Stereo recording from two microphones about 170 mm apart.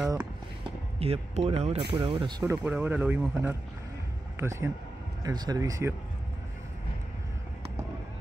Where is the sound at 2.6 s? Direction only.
10° right (ahead or behind).